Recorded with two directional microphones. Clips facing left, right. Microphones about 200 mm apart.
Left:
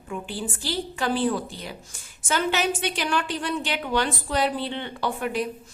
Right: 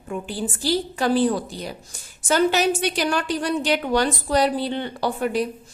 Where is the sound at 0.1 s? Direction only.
40° right (ahead or behind).